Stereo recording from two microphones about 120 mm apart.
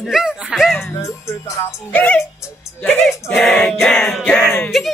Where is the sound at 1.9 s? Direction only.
10° left (ahead or behind).